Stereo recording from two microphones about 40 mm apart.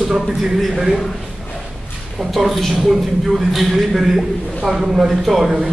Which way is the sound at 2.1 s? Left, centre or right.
Centre.